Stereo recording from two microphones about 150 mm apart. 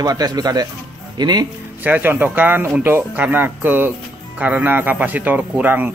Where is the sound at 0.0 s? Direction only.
25° right (ahead or behind).